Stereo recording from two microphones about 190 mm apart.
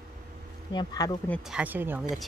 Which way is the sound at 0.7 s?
20° left (ahead or behind).